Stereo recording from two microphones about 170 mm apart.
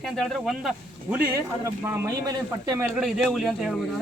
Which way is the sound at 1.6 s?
15° right (ahead or behind).